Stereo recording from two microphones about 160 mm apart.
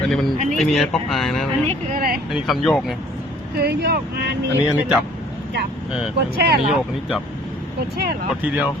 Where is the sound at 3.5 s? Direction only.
90° right.